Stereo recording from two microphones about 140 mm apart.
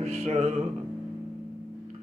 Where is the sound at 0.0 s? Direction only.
50° right (ahead or behind).